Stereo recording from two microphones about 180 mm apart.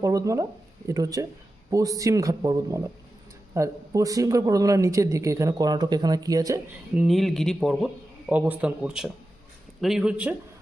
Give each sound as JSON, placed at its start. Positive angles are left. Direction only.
{"t": 0.0, "sound": "speech", "side_deg": -20}
{"t": 6.9, "sound": "speech", "side_deg": 0}